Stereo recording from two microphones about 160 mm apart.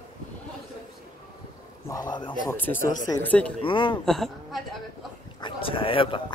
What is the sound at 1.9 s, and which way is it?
Speech, 25° left (ahead or behind).